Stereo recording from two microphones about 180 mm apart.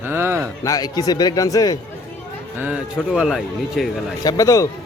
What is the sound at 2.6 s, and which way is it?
Speech, 5° right (ahead or behind).